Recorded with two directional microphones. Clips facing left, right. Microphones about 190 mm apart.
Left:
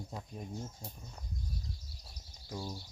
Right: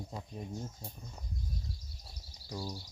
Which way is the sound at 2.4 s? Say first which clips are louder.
Right 1 dB; 10° right (ahead or behind).